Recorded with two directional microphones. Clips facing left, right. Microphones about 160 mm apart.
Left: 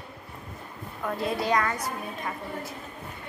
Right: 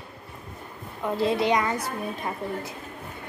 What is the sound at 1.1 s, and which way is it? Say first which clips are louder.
A woman's voice: right 4 dB; 25° right (ahead or behind).